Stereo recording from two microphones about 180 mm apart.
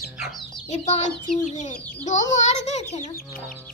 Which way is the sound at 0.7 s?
40° left (ahead or behind).